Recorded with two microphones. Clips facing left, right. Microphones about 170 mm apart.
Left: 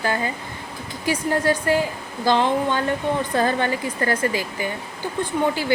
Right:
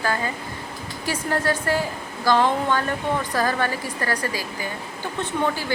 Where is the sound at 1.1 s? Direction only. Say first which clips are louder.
Left 3 dB; 15° left (ahead or behind).